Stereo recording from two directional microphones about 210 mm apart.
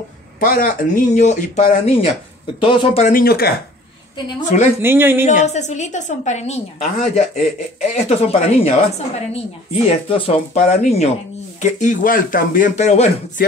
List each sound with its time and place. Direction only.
0.4 s a woman's voice: 40° left (ahead or behind); by 3.1 s 25° left (ahead or behind)
3.1 s speech: 45° left (ahead or behind)
4.4 s a woman's voice: 35° left (ahead or behind)
4.8 s speech: 10° right (ahead or behind)
5.4 s a woman's voice: 35° left (ahead or behind)